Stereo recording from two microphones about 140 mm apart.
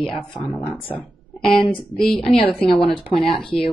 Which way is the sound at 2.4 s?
40° left (ahead or behind).